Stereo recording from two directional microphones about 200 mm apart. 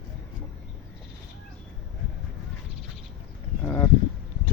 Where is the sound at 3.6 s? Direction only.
10° left (ahead or behind).